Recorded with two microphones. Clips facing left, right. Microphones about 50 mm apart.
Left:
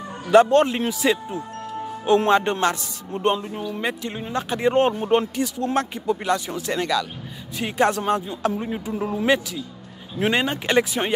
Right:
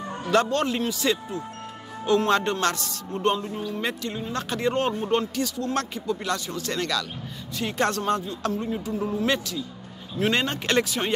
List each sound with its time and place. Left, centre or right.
0.3 s a man's voice: left
8.9 s speech: left
10.1 s a man's voice: centre